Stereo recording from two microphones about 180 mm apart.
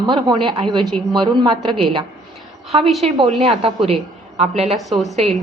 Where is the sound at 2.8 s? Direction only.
Centre (ahead or behind).